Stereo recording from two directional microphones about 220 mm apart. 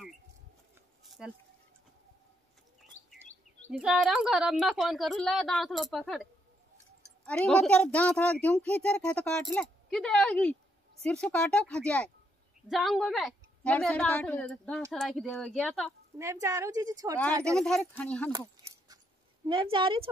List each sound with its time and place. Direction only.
1.2 s a woman's voice: 5° right (ahead or behind)
3.7 s a woman's voice: 5° right (ahead or behind)
7.2 s a woman's voice: 5° left (ahead or behind)
16.2 s a woman's voice: 15° right (ahead or behind)
17.6 s a woman's voice: 5° left (ahead or behind)
19.4 s a woman's voice: 20° right (ahead or behind)